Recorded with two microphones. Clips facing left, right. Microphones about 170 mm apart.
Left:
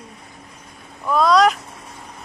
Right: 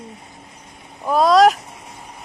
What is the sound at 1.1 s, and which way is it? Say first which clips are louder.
Speech: right 2 dB; 40° right (ahead or behind).